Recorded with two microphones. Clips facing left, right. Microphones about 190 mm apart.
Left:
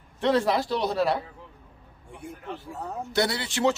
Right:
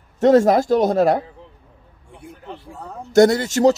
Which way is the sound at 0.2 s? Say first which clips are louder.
Right 10 dB; 45° right (ahead or behind).